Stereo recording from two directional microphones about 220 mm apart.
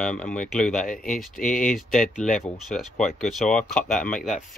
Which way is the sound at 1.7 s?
Centre (ahead or behind).